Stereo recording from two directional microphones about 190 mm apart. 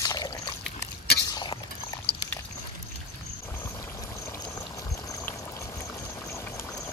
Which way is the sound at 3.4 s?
15° left (ahead or behind).